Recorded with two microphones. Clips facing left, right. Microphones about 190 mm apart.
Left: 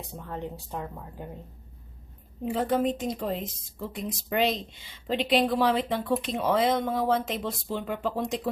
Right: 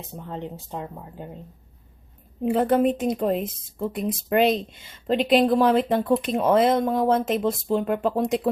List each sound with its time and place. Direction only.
0.0 s speech: 20° right (ahead or behind)
2.4 s a woman's voice: 60° right (ahead or behind)